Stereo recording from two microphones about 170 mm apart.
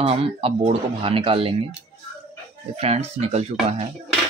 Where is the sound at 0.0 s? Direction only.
35° right (ahead or behind).